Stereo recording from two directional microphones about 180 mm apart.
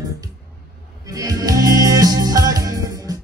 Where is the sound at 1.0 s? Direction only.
20° right (ahead or behind).